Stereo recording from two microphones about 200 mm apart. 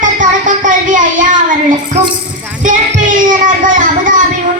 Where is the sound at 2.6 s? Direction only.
40° right (ahead or behind).